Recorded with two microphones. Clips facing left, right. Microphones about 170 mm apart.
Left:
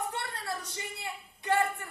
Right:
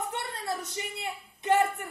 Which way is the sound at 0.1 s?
20° right (ahead or behind).